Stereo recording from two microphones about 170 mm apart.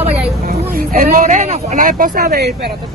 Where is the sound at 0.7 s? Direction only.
55° right (ahead or behind).